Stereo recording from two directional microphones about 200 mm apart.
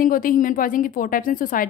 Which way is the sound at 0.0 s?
45° left (ahead or behind).